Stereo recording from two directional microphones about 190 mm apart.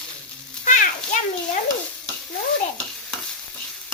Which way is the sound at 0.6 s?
40° left (ahead or behind).